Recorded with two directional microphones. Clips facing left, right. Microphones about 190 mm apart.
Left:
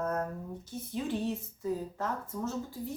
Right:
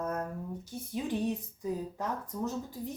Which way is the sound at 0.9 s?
15° right (ahead or behind).